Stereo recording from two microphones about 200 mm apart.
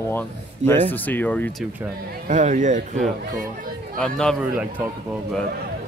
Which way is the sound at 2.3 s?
40° right (ahead or behind).